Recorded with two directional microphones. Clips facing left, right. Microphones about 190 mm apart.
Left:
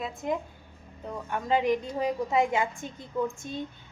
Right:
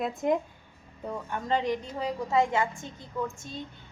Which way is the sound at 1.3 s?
10° left (ahead or behind).